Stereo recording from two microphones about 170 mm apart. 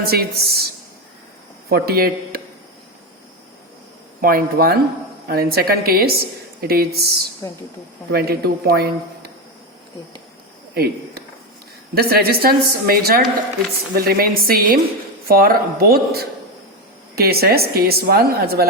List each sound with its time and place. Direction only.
0.0 s a woman's voice: 65° right (ahead or behind)
1.7 s a woman's voice: 65° right (ahead or behind)
4.2 s a woman's voice: 60° right (ahead or behind)
7.4 s a woman's voice: 15° left (ahead or behind)
8.1 s speech: 65° right (ahead or behind)
10.8 s a woman's voice: 65° right (ahead or behind)